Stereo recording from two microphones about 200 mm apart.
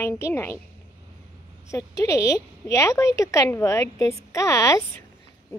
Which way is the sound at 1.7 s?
15° left (ahead or behind).